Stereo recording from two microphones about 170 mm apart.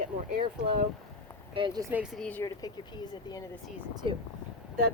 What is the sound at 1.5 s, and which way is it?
Speech, 25° right (ahead or behind).